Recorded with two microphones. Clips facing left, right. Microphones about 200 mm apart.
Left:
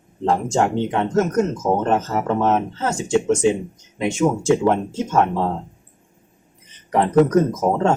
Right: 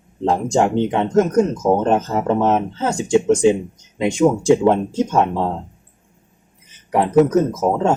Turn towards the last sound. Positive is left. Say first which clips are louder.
# right 1 dB
turn(degrees=-5)  # may be behind; listen again after turning